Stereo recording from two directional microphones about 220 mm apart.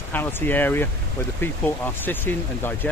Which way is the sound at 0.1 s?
10° left (ahead or behind).